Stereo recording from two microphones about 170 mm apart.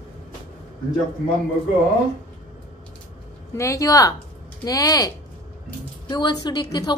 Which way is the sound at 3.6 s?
20° left (ahead or behind).